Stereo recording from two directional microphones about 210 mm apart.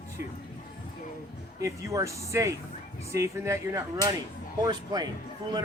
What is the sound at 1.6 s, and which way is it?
Speech, 15° right (ahead or behind).